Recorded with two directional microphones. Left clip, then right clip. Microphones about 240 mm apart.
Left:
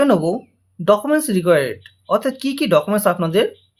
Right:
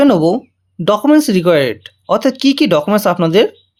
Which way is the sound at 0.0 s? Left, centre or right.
Right.